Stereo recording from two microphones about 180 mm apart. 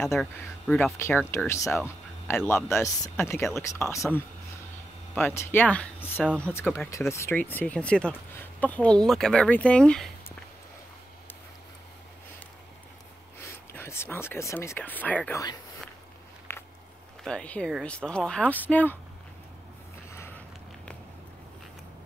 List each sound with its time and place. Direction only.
0.0 s speech: centre (ahead or behind)
13.4 s speech: 15° left (ahead or behind)
16.5 s a sound: 10° left (ahead or behind)
17.2 s speech: 5° left (ahead or behind)
20.1 s vehicle: 15° left (ahead or behind)